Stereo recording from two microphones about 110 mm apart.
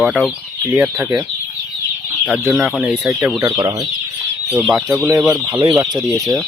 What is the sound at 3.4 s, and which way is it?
Speech, 35° right (ahead or behind).